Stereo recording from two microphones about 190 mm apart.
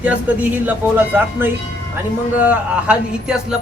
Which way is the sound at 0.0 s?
10° right (ahead or behind).